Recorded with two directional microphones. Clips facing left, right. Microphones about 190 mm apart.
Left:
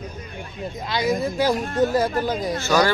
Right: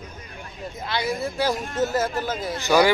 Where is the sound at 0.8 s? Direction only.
15° left (ahead or behind).